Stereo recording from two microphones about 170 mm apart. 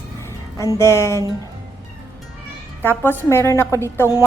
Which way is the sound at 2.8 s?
10° left (ahead or behind).